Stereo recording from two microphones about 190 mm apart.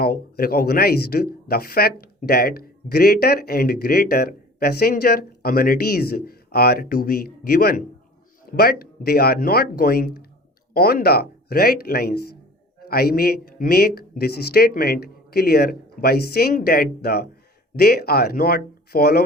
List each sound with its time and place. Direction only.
0.0 s speech: 50° left (ahead or behind)